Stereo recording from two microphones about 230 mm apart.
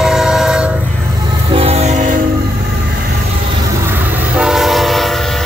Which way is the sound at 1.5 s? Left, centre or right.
Right.